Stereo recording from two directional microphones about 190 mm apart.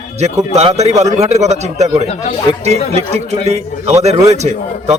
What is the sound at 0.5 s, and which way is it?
A man's voice, 35° right (ahead or behind).